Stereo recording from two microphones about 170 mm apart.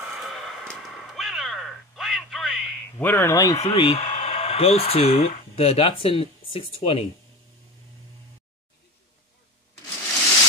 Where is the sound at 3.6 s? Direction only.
35° left (ahead or behind).